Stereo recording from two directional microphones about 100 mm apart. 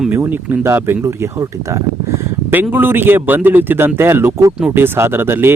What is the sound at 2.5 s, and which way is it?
Speech, 20° right (ahead or behind).